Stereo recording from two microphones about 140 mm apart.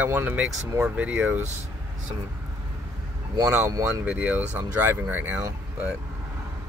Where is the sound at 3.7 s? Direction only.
25° right (ahead or behind).